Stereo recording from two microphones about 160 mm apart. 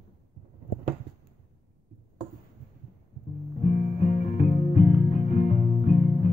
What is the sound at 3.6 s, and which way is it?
Music, 50° left (ahead or behind).